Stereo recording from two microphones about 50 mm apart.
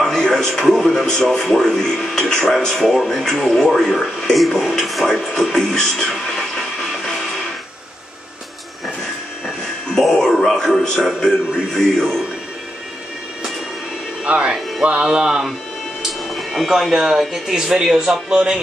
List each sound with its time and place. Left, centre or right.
0.1 s speech: centre
9.8 s speech: centre
14.2 s speech: right
14.8 s music: right
15.0 s speech: centre
16.3 s speech: centre